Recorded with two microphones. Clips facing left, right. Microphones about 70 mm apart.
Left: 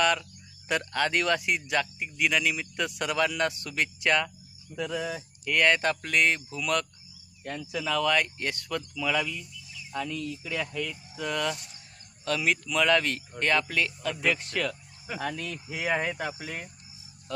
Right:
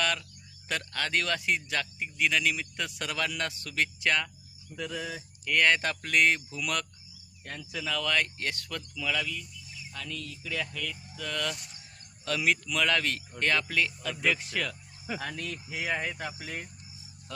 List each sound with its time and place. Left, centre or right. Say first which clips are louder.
0.0 s a sound: left 5 dB; centre
0.7 s speech: left 4 dB; centre
12.2 s speech: left 1 dB; centre
15.9 s speech: left 5 dB; centre